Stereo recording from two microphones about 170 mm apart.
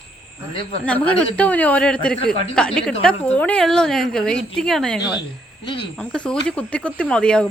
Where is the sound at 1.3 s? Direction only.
10° left (ahead or behind).